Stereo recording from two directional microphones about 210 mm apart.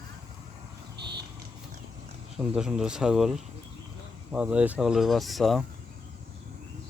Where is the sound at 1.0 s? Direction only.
50° right (ahead or behind).